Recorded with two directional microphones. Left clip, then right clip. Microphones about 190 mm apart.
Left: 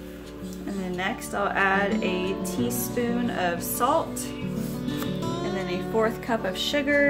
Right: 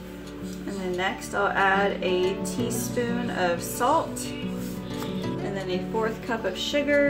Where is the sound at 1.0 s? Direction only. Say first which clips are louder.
Right 1 dB; 45° left (ahead or behind).